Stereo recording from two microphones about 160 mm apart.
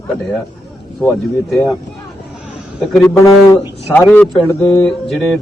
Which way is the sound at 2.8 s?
5° left (ahead or behind).